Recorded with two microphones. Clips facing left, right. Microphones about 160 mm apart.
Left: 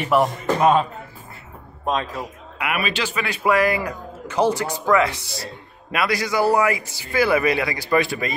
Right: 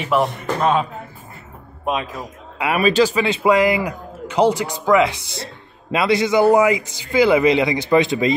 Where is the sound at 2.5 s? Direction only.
35° right (ahead or behind).